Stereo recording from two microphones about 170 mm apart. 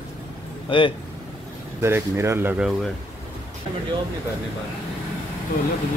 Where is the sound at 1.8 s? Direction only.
15° right (ahead or behind).